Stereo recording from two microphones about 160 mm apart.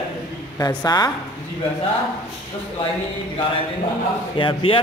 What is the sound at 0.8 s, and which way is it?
Speech, 25° left (ahead or behind).